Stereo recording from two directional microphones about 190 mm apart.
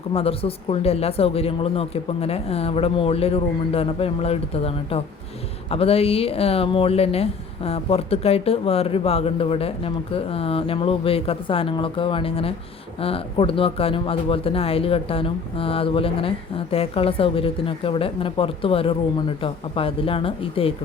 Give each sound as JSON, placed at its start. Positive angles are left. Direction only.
{"t": 0.1, "sound": "speech", "side_deg": 30}